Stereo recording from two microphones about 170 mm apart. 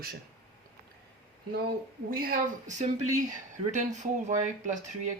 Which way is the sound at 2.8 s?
45° right (ahead or behind).